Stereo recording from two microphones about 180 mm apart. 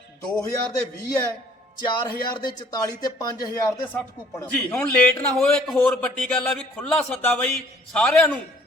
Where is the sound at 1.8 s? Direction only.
25° left (ahead or behind).